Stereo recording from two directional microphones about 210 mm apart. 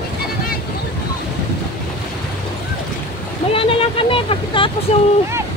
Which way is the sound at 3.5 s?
25° left (ahead or behind).